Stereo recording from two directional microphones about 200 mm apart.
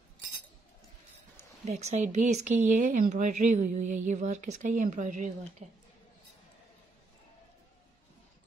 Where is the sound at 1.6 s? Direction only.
35° right (ahead or behind).